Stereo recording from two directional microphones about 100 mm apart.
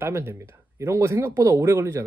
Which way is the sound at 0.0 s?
25° right (ahead or behind).